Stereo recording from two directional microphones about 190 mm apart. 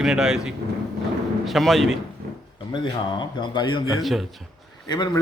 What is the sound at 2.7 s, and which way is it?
A man's voice, 25° left (ahead or behind).